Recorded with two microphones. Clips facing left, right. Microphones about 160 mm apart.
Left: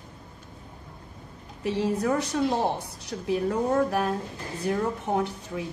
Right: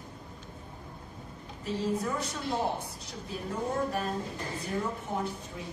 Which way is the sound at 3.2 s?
70° left (ahead or behind).